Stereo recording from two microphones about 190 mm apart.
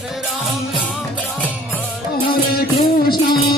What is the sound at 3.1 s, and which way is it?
Music, 50° left (ahead or behind).